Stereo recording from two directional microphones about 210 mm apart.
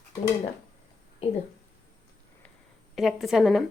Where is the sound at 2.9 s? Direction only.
Centre (ahead or behind).